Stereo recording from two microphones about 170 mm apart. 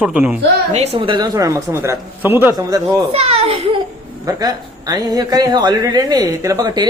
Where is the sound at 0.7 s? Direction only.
40° right (ahead or behind); by 3.0 s 15° right (ahead or behind).